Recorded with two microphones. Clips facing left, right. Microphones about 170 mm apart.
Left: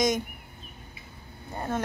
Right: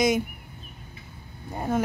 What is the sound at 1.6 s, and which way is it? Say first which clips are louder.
Speech: right 5 dB; 10° right (ahead or behind).